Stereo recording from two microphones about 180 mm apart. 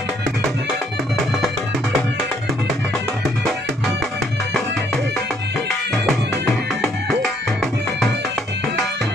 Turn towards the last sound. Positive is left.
turn(degrees=0)  # may be behind; listen again after turning